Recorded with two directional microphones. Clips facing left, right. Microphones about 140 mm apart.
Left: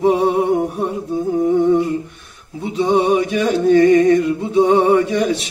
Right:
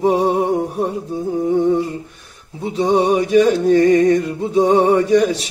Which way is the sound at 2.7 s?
40° right (ahead or behind).